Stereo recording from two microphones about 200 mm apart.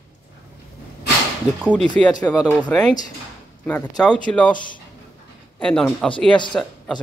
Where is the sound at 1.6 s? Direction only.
5° left (ahead or behind).